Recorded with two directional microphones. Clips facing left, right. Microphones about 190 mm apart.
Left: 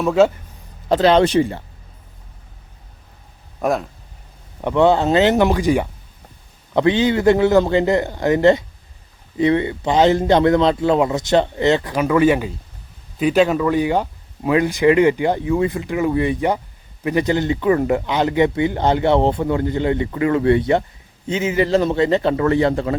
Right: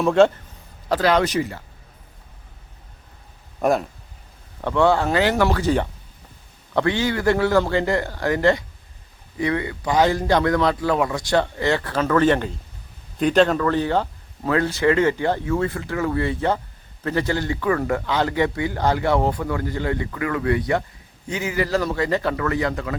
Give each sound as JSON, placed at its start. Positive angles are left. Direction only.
{"t": 0.0, "sound": "speech", "side_deg": 5}
{"t": 0.9, "sound": "speech", "side_deg": 25}
{"t": 3.6, "sound": "speech", "side_deg": 0}
{"t": 4.6, "sound": "speech", "side_deg": 20}